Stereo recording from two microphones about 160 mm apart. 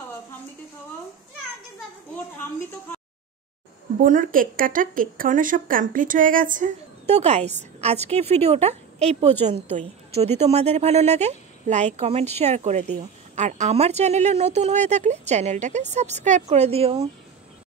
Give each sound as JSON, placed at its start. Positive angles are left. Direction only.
{"t": 4.0, "sound": "speech", "side_deg": -55}
{"t": 7.1, "sound": "a woman's voice", "side_deg": -40}